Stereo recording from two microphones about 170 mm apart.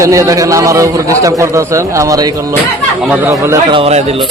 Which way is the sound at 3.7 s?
35° right (ahead or behind).